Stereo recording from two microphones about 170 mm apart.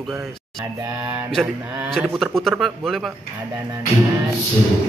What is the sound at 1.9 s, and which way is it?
A man's voice, centre (ahead or behind).